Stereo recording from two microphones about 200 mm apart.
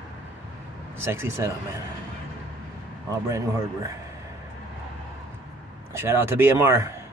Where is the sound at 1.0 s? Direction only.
10° right (ahead or behind).